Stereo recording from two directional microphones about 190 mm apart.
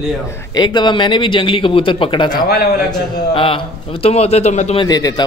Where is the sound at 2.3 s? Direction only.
60° left (ahead or behind).